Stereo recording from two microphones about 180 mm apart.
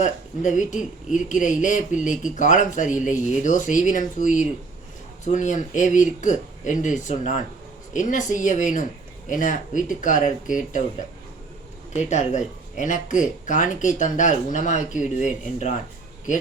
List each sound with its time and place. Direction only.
0.0 s speech: 40° left (ahead or behind)
11.9 s speech: 40° left (ahead or behind)